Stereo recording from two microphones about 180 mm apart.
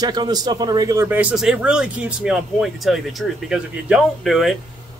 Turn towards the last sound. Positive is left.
turn(degrees=0)  # may be behind; listen again after turning